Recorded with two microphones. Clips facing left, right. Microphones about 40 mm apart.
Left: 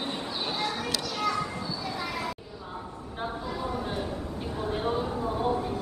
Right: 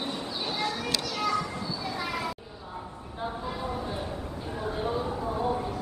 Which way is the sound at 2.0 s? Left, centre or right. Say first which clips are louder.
Right 2 dB; centre.